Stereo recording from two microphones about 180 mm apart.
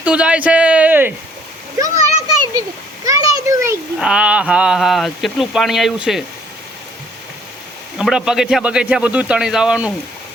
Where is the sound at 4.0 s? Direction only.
5° right (ahead or behind).